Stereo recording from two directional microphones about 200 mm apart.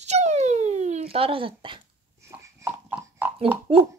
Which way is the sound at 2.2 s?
15° right (ahead or behind).